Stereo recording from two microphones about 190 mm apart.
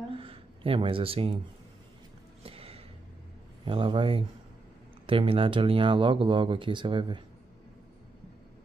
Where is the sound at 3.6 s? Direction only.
25° right (ahead or behind).